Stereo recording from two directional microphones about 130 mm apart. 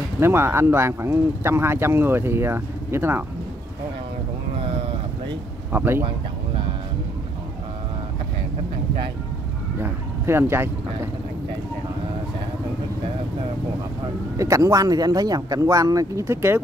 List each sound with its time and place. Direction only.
0.2 s speech: 20° right (ahead or behind)
5.7 s speech: 15° right (ahead or behind)
9.8 s speech: 20° right (ahead or behind)
14.3 s speech: 25° right (ahead or behind)